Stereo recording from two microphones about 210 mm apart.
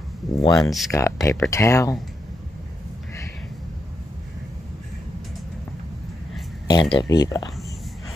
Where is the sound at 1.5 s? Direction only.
15° left (ahead or behind).